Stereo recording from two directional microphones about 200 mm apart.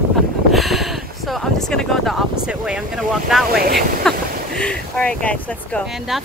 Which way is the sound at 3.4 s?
45° right (ahead or behind).